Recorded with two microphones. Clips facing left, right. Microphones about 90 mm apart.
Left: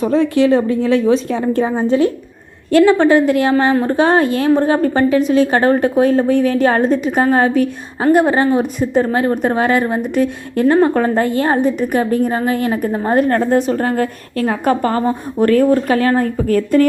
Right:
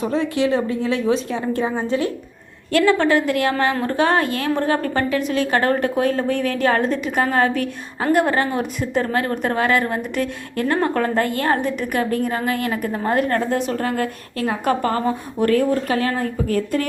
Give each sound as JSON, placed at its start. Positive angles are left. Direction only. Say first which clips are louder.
{"t": 0.0, "sound": "a woman's voice", "louder": "left 7 dB", "side_deg": 40}